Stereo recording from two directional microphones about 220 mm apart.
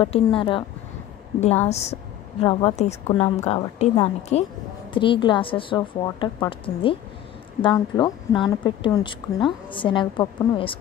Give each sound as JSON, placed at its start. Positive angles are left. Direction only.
{"t": 0.0, "sound": "a woman's voice", "side_deg": 25}
{"t": 1.7, "sound": "a woman's voice", "side_deg": 30}